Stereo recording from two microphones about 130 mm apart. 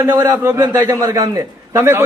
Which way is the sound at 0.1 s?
25° right (ahead or behind).